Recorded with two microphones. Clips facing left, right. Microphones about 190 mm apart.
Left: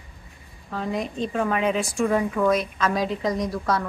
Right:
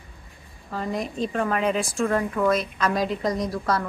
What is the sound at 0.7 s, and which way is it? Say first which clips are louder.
A woman's voice: left 1 dB; centre (ahead or behind).